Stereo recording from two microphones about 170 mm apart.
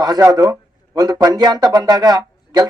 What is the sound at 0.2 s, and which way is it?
Speech, 20° right (ahead or behind).